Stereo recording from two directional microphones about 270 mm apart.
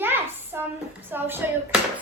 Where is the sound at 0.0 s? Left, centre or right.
Centre.